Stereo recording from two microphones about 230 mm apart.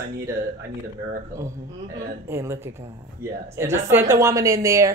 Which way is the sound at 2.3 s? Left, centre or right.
Centre.